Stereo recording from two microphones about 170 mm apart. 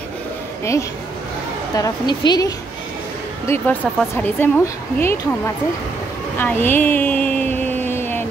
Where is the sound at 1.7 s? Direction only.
25° left (ahead or behind).